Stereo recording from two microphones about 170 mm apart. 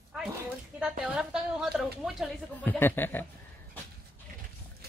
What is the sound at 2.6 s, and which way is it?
Speech, 10° left (ahead or behind).